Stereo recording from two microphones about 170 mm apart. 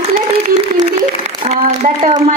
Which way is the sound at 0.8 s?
40° right (ahead or behind).